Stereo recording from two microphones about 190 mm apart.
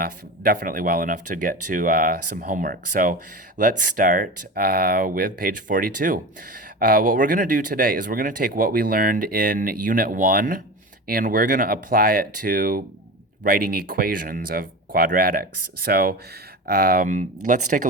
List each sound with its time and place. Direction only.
0.0 s speech: 50° right (ahead or behind)